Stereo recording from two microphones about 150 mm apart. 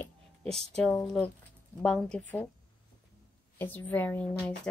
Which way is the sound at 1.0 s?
5° left (ahead or behind).